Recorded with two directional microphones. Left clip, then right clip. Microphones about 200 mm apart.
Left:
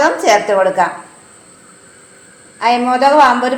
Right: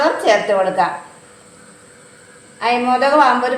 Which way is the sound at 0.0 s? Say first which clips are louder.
Left 3 dB; 30° left (ahead or behind).